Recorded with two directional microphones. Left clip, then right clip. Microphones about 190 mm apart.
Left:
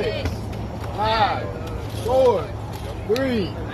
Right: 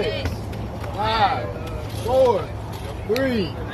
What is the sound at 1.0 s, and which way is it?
Vehicle, 50° right (ahead or behind).